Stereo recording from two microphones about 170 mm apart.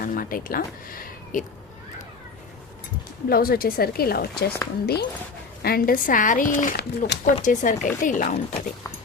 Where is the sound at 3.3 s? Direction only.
60° left (ahead or behind).